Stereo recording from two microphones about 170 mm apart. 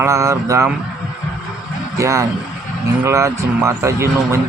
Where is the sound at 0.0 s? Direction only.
15° right (ahead or behind).